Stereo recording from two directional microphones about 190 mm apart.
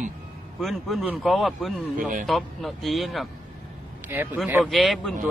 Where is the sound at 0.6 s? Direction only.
Centre (ahead or behind).